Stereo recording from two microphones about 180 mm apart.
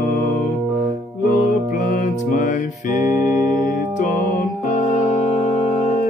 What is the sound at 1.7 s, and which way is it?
Music, 45° left (ahead or behind).